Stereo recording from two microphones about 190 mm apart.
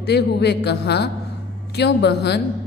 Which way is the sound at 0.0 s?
60° left (ahead or behind).